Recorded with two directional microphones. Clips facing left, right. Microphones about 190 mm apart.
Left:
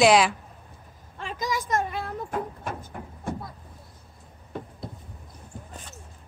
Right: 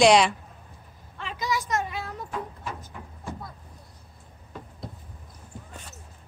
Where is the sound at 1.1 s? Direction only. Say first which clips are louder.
Even; 45° left (ahead or behind).